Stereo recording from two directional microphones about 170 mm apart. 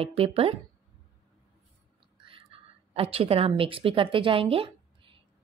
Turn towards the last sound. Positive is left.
turn(degrees=-30)  # may be behind; listen again after turning